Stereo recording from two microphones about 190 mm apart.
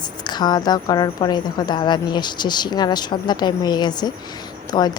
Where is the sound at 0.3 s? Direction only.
20° left (ahead or behind).